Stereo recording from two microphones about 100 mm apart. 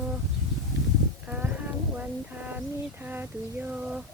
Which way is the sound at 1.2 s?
15° right (ahead or behind).